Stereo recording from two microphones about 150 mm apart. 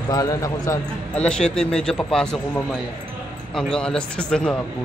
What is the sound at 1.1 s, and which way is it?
Speech, 5° left (ahead or behind).